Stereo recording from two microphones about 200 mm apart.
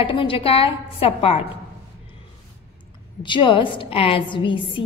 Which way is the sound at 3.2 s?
25° left (ahead or behind).